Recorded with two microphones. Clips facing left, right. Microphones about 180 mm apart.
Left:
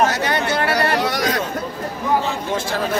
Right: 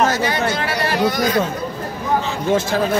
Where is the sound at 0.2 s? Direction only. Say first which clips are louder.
Even; 60° left (ahead or behind).